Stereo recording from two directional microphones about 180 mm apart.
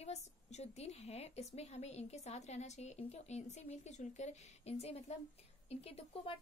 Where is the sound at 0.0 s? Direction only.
40° left (ahead or behind).